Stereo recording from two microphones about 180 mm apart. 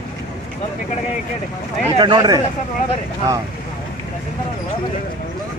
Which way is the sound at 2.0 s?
25° right (ahead or behind).